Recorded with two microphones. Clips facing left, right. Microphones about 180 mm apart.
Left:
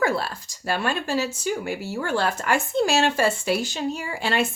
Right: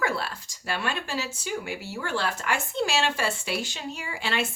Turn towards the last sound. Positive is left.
turn(degrees=45)  # may be behind; listen again after turning